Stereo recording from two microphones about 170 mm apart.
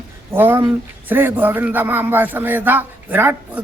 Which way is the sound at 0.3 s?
15° right (ahead or behind).